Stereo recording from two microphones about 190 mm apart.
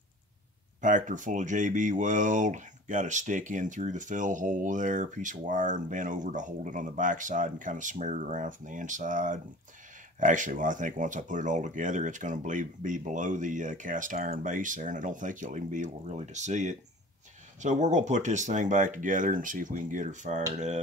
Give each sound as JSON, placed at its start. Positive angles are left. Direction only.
{"t": 0.7, "sound": "speech", "side_deg": -40}